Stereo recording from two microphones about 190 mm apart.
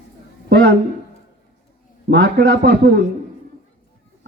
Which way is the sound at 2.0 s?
65° right (ahead or behind).